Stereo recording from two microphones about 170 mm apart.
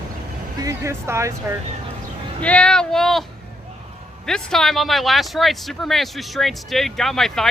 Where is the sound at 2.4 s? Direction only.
5° left (ahead or behind).